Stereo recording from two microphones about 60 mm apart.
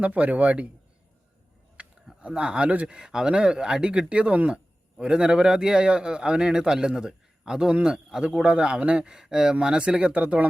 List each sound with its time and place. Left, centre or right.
0.0 s speech: right
1.8 s a sound: right
2.2 s a man's voice: centre